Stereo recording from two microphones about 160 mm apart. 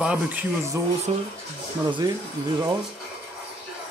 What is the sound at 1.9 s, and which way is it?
Speech, 30° right (ahead or behind).